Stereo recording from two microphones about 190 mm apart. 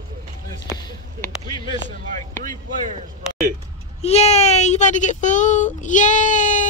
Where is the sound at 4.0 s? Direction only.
35° left (ahead or behind).